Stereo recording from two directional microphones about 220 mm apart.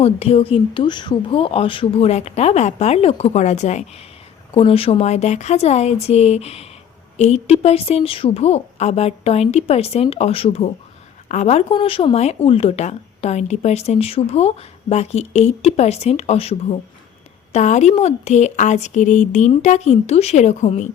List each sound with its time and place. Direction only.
0.0 s speech: 30° left (ahead or behind)